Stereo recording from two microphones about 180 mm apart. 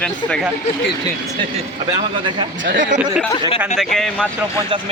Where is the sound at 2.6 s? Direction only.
85° right.